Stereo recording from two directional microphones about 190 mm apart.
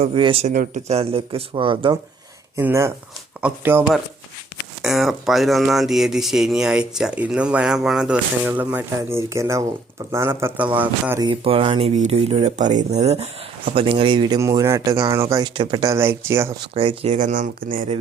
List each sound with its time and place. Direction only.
0.0 s speech: 25° right (ahead or behind)
0.5 s speech: 45° right (ahead or behind); by 2.0 s 25° right (ahead or behind)
2.6 s speech: 10° right (ahead or behind)
11.2 s speech: 25° right (ahead or behind)
16.7 s speech: 30° right (ahead or behind)